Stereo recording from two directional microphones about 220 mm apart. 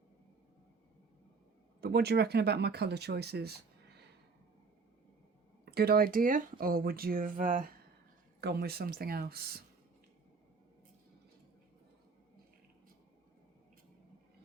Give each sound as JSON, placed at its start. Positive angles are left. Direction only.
{"t": 1.8, "sound": "speech", "side_deg": -45}
{"t": 5.7, "sound": "speech", "side_deg": -45}
{"t": 8.4, "sound": "speech", "side_deg": -50}